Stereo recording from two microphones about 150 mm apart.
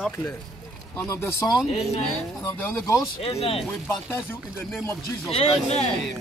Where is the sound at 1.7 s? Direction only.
45° left (ahead or behind).